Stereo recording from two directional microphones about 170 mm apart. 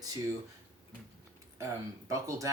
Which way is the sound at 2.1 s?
20° right (ahead or behind).